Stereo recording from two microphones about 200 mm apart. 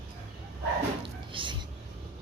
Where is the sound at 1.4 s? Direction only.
25° right (ahead or behind).